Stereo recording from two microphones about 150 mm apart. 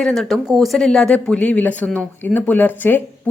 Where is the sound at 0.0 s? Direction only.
Centre (ahead or behind).